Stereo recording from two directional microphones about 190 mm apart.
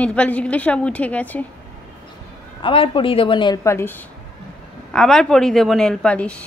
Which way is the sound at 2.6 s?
25° left (ahead or behind).